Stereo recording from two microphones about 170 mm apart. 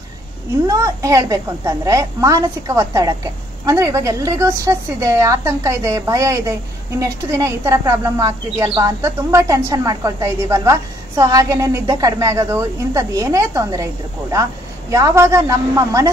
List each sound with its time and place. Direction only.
0.7 s a woman's voice: 20° right (ahead or behind)